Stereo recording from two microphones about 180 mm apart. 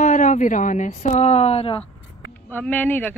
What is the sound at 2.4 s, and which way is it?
Speech, 10° left (ahead or behind).